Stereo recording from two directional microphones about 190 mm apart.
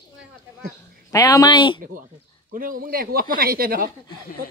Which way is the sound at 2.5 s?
45° right (ahead or behind).